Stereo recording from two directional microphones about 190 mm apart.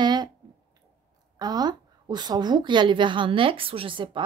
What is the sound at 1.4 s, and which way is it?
A woman's voice, 20° right (ahead or behind).